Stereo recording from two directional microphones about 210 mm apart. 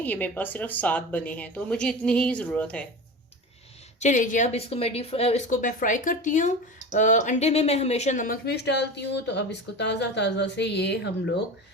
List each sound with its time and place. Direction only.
0.0 s a woman's voice: 10° left (ahead or behind)
4.0 s speech: 40° left (ahead or behind); by 11.1 s 55° left (ahead or behind)